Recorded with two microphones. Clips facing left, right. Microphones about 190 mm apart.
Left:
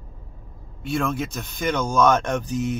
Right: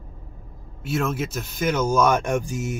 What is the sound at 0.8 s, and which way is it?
Speech, 5° right (ahead or behind).